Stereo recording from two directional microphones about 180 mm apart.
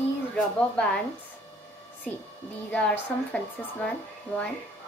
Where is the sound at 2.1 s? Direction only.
10° left (ahead or behind).